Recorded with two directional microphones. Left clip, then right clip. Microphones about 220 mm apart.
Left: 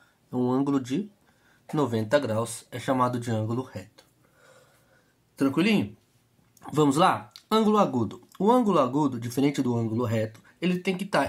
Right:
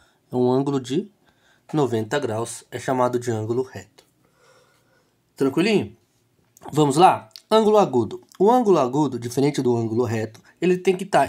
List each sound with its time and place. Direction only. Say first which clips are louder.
0.3 s speech: right 5 dB; 45° right (ahead or behind)
5.3 s speech: right 5 dB; 45° right (ahead or behind)